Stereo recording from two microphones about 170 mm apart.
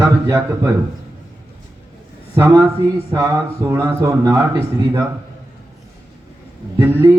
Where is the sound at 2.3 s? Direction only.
15° right (ahead or behind).